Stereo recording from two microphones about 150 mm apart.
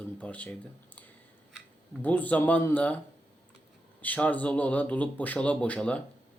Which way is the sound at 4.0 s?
10° left (ahead or behind).